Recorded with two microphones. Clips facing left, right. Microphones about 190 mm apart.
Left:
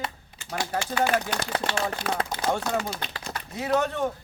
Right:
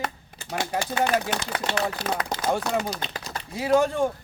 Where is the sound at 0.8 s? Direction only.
35° right (ahead or behind).